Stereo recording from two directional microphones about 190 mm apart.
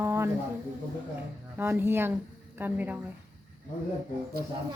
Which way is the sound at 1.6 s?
10° right (ahead or behind).